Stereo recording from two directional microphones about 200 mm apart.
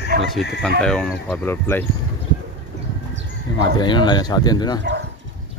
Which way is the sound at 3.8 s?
20° left (ahead or behind).